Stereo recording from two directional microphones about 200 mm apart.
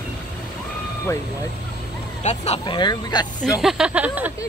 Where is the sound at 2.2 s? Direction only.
35° left (ahead or behind).